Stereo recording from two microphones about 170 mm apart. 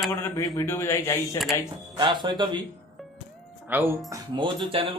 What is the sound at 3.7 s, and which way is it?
Speech, 10° right (ahead or behind).